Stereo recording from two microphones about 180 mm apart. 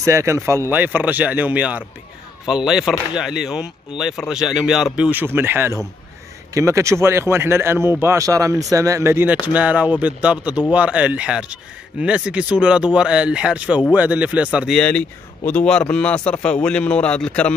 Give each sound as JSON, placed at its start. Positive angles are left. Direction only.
{"t": 0.0, "sound": "speech", "side_deg": -15}